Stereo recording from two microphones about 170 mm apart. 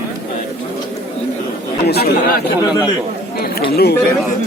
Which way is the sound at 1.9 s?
65° left (ahead or behind).